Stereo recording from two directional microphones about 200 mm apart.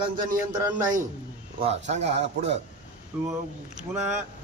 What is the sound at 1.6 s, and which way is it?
Speech, 35° right (ahead or behind).